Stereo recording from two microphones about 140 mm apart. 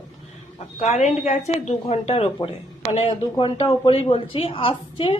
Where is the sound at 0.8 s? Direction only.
55° left (ahead or behind).